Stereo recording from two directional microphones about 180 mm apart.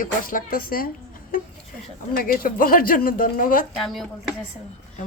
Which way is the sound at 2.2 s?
50° left (ahead or behind).